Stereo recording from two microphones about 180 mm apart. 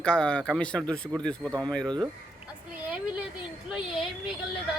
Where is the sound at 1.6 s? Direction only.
5° left (ahead or behind).